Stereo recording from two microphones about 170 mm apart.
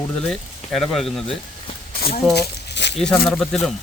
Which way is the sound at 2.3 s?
85° left.